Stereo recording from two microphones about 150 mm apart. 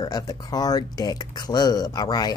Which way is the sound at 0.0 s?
25° left (ahead or behind).